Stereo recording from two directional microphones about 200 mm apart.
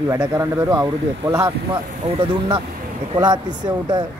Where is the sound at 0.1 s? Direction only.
15° right (ahead or behind).